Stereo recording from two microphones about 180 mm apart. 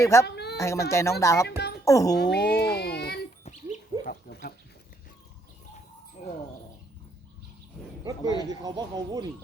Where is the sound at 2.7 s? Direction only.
65° left (ahead or behind).